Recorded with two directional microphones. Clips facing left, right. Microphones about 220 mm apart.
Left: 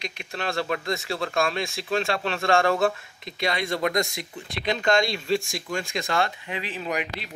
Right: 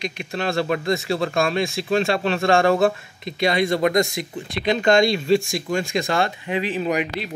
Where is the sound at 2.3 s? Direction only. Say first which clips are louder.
Right 4 dB; 25° right (ahead or behind).